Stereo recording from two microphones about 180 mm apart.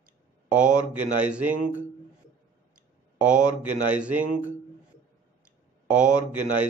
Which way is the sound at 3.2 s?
5° right (ahead or behind).